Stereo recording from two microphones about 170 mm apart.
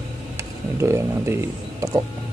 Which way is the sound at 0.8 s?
15° right (ahead or behind).